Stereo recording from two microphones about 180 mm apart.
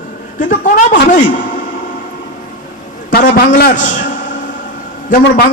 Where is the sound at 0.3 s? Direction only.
45° left (ahead or behind).